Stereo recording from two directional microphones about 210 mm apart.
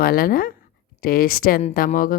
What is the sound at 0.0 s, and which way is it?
A woman's voice, 45° left (ahead or behind).